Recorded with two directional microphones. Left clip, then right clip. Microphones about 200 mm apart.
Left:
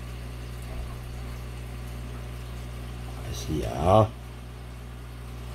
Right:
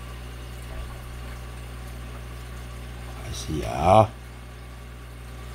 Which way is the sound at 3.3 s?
15° right (ahead or behind).